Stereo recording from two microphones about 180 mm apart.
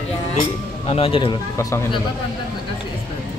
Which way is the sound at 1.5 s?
20° left (ahead or behind).